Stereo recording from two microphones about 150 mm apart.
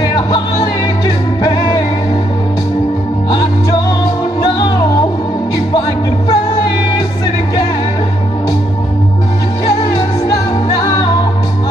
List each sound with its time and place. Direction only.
0.1 s music: 30° left (ahead or behind)
5.8 s music: 35° left (ahead or behind)